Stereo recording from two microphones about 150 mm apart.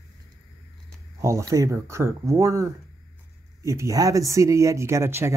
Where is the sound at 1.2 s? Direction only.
20° right (ahead or behind).